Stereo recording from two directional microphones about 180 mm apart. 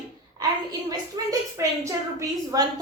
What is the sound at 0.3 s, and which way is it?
A woman's voice, 20° right (ahead or behind).